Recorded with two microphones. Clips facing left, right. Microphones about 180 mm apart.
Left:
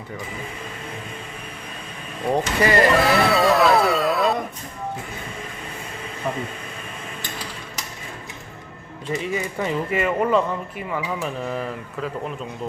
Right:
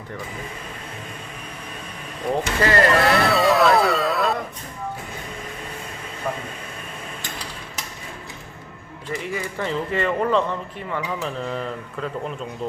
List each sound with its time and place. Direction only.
2.3 s speech: 15° left (ahead or behind)
2.9 s music: centre (ahead or behind)
9.0 s speech: 20° left (ahead or behind)